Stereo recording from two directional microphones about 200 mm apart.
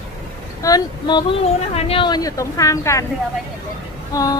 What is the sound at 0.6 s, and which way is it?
Speech, 20° left (ahead or behind).